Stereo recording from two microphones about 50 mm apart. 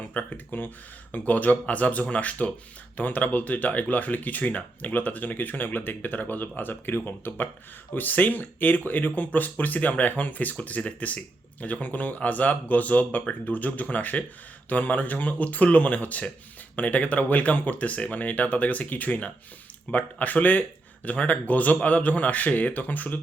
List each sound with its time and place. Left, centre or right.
0.1 s speech: left